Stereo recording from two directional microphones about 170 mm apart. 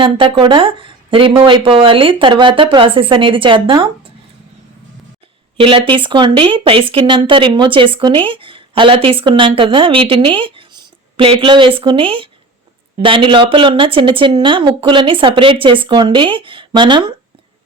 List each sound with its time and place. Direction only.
0.0 s speech: 30° right (ahead or behind)
5.5 s a woman's voice: 30° right (ahead or behind)